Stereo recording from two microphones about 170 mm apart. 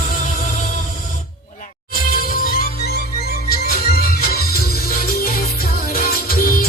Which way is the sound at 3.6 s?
65° left (ahead or behind).